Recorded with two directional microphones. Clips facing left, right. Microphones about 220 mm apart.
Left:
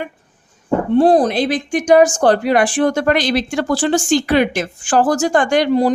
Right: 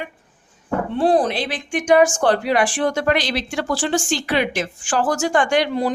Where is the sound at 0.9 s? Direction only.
40° left (ahead or behind).